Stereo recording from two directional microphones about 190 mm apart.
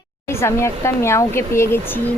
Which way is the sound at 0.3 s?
15° left (ahead or behind).